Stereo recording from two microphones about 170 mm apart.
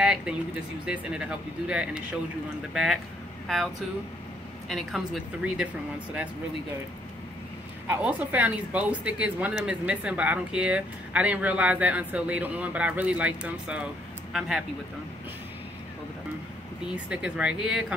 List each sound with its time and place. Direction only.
0.0 s a sound: 5° right (ahead or behind)
0.8 s speech: 5° right (ahead or behind)
7.8 s speech: 10° right (ahead or behind)
16.8 s speech: 5° right (ahead or behind)